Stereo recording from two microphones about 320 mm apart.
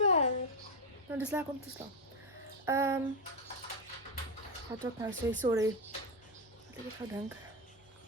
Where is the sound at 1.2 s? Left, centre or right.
Centre.